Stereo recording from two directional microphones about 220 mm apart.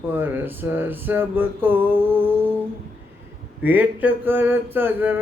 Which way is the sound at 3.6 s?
5° right (ahead or behind).